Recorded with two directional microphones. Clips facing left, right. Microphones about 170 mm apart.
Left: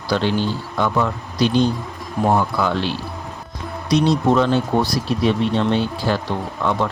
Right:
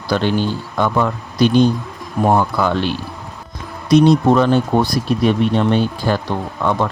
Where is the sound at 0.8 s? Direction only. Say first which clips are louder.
Right 3 dB; 55° right (ahead or behind).